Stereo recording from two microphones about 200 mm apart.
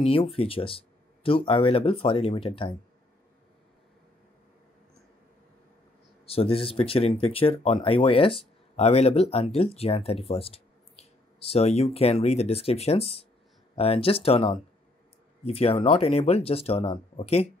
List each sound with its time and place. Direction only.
0.0 s speech: 30° left (ahead or behind)
6.2 s speech: 30° left (ahead or behind)